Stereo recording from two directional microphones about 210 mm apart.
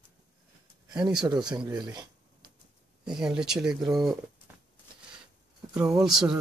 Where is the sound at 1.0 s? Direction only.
20° right (ahead or behind).